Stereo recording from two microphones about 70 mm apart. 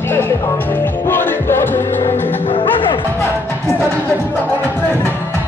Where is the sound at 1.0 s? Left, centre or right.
Left.